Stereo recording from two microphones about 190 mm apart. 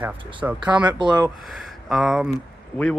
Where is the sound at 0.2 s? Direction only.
25° right (ahead or behind).